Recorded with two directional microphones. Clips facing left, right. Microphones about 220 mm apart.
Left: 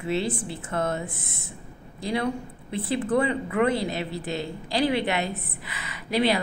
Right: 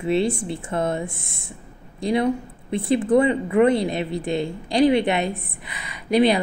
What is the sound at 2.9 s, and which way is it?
A woman's voice, 20° right (ahead or behind).